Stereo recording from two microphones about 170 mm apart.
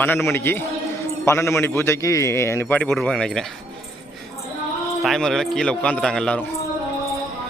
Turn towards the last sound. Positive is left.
turn(degrees=5)  # may be behind; listen again after turning